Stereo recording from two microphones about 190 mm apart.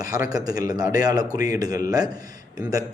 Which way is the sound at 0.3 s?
20° right (ahead or behind).